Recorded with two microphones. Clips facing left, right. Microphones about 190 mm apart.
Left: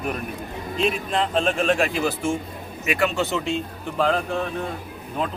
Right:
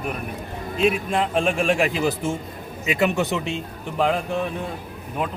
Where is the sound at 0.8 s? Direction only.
10° right (ahead or behind).